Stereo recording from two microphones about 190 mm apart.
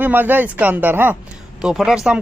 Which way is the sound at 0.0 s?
10° right (ahead or behind).